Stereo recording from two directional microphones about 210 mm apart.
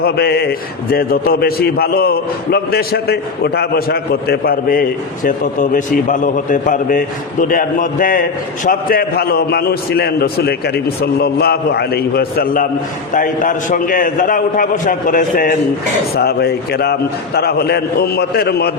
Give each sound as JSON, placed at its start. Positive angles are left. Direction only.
{"t": 0.0, "sound": "a man's voice", "side_deg": 50}